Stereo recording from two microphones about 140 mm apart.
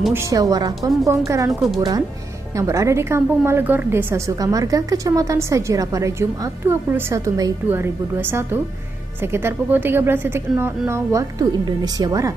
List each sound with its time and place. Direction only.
0.1 s a woman's voice: 20° right (ahead or behind)
1.6 s speech: centre (ahead or behind)
2.5 s a woman's voice: 20° right (ahead or behind)